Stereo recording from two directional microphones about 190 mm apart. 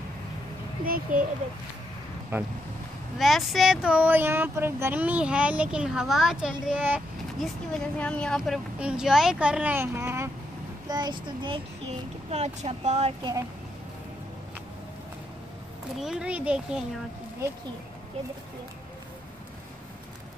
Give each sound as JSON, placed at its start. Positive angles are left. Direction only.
{"t": 0.8, "sound": "a child's voice", "side_deg": -50}
{"t": 2.3, "sound": "speech", "side_deg": -10}
{"t": 3.2, "sound": "a child's voice", "side_deg": 0}
{"t": 12.3, "sound": "speech", "side_deg": -35}
{"t": 16.0, "sound": "speech", "side_deg": -5}